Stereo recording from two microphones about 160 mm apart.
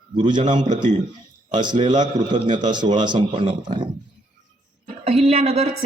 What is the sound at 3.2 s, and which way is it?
Speech, 55° right (ahead or behind).